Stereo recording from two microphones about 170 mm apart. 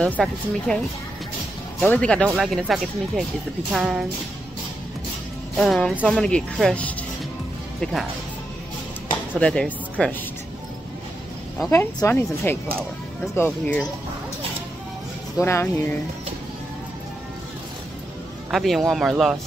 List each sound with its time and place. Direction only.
0.0 s speech: 5° left (ahead or behind)
1.8 s speech: 5° left (ahead or behind)
5.6 s speech: centre (ahead or behind)
9.4 s speech: 5° left (ahead or behind)
11.7 s speech: 15° left (ahead or behind)
15.3 s speech: 15° left (ahead or behind)
18.5 s speech: centre (ahead or behind)